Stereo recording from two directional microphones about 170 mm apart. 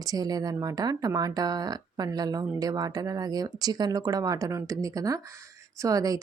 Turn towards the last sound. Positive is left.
turn(degrees=-20)  # may be behind; listen again after turning